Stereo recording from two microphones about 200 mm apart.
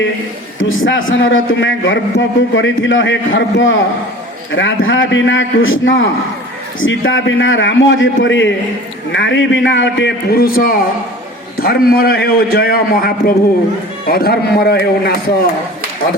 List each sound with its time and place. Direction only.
0.6 s a man's voice: 75° left (ahead or behind); by 15.4 s 50° left (ahead or behind)